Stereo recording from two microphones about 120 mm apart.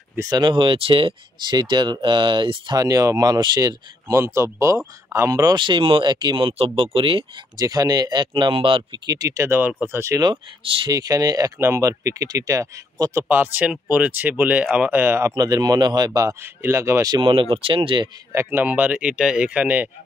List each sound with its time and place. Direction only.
0.2 s speech: 35° right (ahead or behind)
6.6 s speech: 50° right (ahead or behind)
7.5 s speech: 30° right (ahead or behind)
10.2 s speech: 45° right (ahead or behind)
10.9 s speech: 30° right (ahead or behind)
13.3 s speech: 15° right (ahead or behind)
15.3 s speech: 35° right (ahead or behind)
17.1 s speech: 45° right (ahead or behind)
18.3 s speech: 20° right (ahead or behind)